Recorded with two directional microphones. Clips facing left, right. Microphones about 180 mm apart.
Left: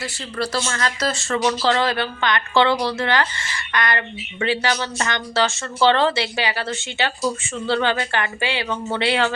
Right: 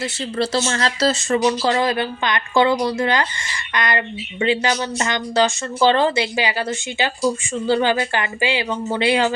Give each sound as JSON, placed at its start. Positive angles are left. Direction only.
{"t": 0.0, "sound": "speech", "side_deg": -25}
{"t": 1.3, "sound": "a woman's voice", "side_deg": -15}